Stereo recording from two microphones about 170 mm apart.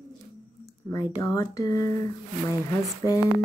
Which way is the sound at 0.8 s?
20° left (ahead or behind).